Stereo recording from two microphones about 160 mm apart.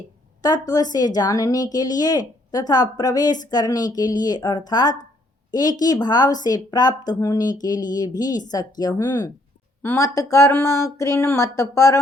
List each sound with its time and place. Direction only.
0.4 s a woman's voice: 25° left (ahead or behind)